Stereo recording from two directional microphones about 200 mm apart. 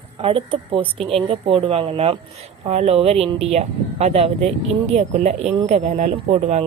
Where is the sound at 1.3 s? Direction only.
25° right (ahead or behind).